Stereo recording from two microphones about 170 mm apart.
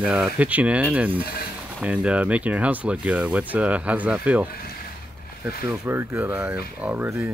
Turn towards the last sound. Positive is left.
turn(degrees=-10)  # may be behind; listen again after turning